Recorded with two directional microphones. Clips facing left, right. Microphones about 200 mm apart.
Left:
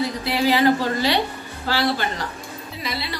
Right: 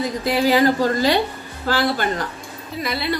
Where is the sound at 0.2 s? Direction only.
45° right (ahead or behind).